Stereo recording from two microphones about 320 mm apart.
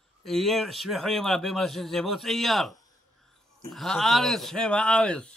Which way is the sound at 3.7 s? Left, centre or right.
Centre.